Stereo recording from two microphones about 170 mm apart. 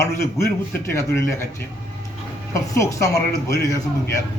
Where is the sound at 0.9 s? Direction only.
15° left (ahead or behind).